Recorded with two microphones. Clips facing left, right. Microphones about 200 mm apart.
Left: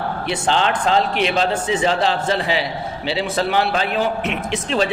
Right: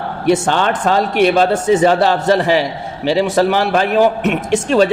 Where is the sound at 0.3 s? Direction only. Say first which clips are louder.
Right 6 dB; 50° right (ahead or behind).